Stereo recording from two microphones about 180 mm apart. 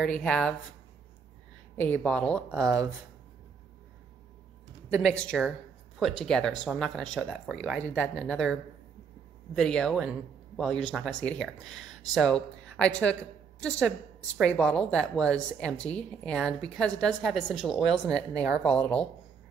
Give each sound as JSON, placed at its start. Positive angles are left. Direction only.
{"t": 0.0, "sound": "speech", "side_deg": 5}
{"t": 1.8, "sound": "speech", "side_deg": 5}
{"t": 5.1, "sound": "speech", "side_deg": 5}
{"t": 9.6, "sound": "speech", "side_deg": 5}
{"t": 18.1, "sound": "a woman's voice", "side_deg": -20}
{"t": 18.6, "sound": "speech", "side_deg": 5}